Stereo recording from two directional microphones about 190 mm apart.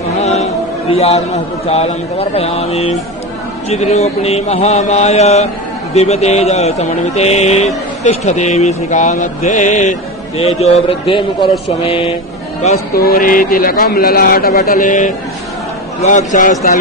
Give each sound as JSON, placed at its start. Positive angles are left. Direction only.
{"t": 0.2, "sound": "a man's voice", "side_deg": 35}
{"t": 3.6, "sound": "music", "side_deg": 35}
{"t": 11.8, "sound": "speech", "side_deg": 30}
{"t": 12.9, "sound": "speech", "side_deg": 50}
{"t": 16.0, "sound": "music", "side_deg": 40}